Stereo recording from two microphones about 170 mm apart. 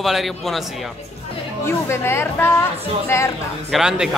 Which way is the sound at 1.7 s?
15° left (ahead or behind).